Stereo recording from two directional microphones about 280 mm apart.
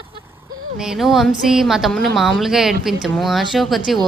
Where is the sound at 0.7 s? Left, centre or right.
Centre.